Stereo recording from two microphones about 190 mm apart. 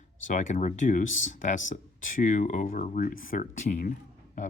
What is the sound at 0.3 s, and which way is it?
Speech, 40° left (ahead or behind).